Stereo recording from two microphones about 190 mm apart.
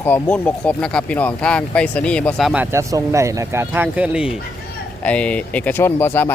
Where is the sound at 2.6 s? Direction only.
15° right (ahead or behind).